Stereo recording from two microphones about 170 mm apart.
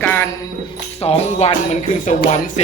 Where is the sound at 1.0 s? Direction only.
40° left (ahead or behind).